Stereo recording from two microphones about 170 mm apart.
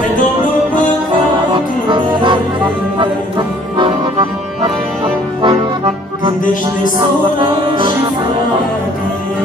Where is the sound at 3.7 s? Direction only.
30° right (ahead or behind).